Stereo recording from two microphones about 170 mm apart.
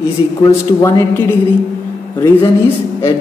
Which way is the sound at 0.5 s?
15° left (ahead or behind).